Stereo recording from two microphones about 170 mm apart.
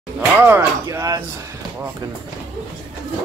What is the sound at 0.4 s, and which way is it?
Speech, 15° right (ahead or behind).